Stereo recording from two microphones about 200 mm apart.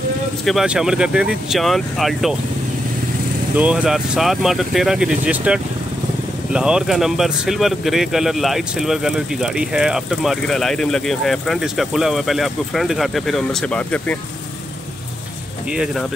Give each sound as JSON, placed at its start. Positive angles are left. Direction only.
{"t": 0.5, "sound": "speech", "side_deg": 0}
{"t": 3.5, "sound": "speech", "side_deg": -5}
{"t": 15.7, "sound": "speech", "side_deg": -5}